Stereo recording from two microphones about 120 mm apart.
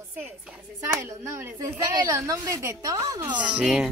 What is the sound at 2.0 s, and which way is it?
A woman's voice, 25° right (ahead or behind).